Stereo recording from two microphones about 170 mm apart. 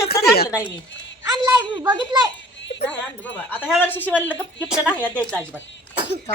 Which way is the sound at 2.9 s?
10° left (ahead or behind).